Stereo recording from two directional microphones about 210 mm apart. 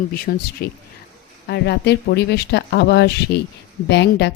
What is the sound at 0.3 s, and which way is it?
Speech, 45° left (ahead or behind).